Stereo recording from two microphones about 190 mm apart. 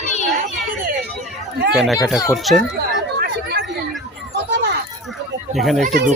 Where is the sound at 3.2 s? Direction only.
55° right (ahead or behind).